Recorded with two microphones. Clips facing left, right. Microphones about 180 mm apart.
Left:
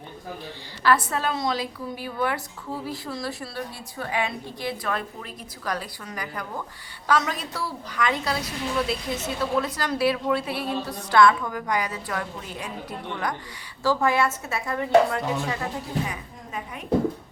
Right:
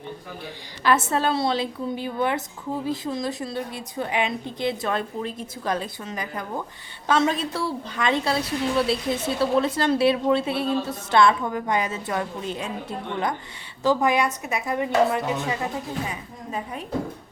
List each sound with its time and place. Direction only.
0.4 s a woman's voice: 20° right (ahead or behind)
16.5 s a woman's voice: 30° right (ahead or behind)